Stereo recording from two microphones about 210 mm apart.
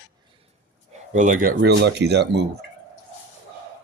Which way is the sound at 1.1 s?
35° right (ahead or behind).